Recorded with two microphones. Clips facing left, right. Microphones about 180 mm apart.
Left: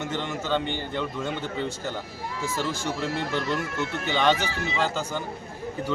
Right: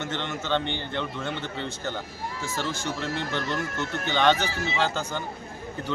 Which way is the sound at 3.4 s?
45° right (ahead or behind).